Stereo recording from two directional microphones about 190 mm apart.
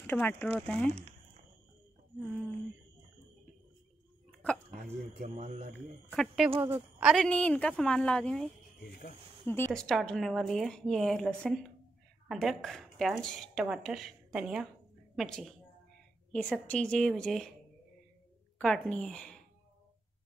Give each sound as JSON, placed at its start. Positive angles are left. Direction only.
{"t": 0.0, "sound": "speech", "side_deg": 10}
{"t": 0.8, "sound": "a sound", "side_deg": -35}
{"t": 4.4, "sound": "a sound", "side_deg": 5}
{"t": 4.7, "sound": "a man's voice", "side_deg": -45}
{"t": 6.1, "sound": "speech", "side_deg": 0}
{"t": 8.7, "sound": "speech", "side_deg": 60}
{"t": 9.7, "sound": "speech", "side_deg": 0}
{"t": 18.6, "sound": "speech", "side_deg": 5}